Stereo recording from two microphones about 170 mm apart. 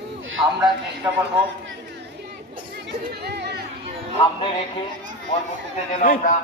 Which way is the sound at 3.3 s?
75° right (ahead or behind).